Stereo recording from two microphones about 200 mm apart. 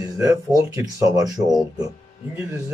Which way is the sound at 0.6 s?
15° right (ahead or behind).